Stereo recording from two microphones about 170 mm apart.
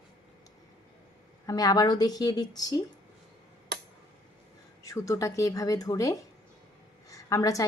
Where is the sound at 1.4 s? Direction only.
20° left (ahead or behind).